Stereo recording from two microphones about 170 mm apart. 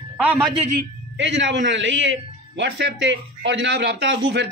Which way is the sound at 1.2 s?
90° right.